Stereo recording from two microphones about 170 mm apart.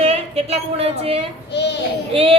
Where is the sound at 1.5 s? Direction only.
90° left.